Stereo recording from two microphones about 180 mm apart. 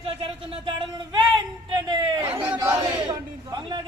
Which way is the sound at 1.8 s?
25° right (ahead or behind).